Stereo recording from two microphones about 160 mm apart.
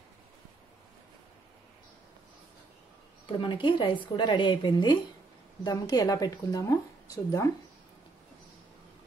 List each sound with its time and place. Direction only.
3.3 s a woman's voice: 30° left (ahead or behind)